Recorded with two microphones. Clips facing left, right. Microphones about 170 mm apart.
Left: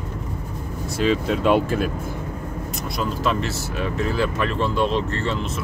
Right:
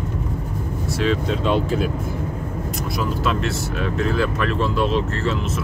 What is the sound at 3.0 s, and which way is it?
Speech, centre (ahead or behind).